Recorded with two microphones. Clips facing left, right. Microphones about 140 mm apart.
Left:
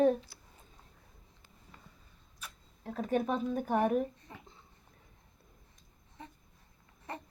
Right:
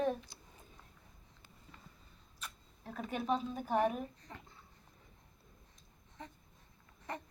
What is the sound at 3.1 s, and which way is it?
Speech, 50° left (ahead or behind).